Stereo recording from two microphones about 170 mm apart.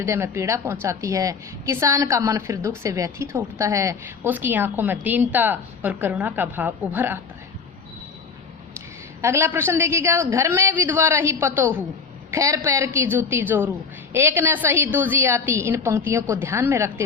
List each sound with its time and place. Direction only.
0.0 s a woman's voice: 15° right (ahead or behind)
9.2 s a woman's voice: 15° right (ahead or behind)